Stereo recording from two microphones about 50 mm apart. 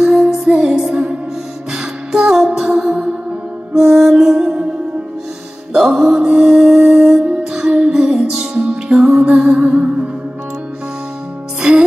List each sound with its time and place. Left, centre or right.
0.0 s music: centre
5.8 s music: centre